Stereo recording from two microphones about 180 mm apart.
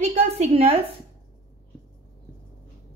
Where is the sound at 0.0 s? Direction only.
35° right (ahead or behind).